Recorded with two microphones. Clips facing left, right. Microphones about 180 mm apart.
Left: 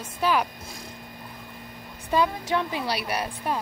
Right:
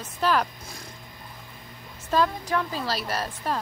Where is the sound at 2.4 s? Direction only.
25° left (ahead or behind).